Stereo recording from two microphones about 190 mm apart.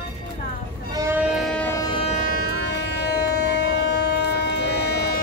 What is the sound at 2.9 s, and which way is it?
Music, 60° left (ahead or behind).